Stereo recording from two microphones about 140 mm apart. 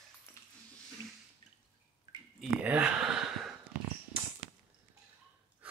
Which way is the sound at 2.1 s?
25° right (ahead or behind).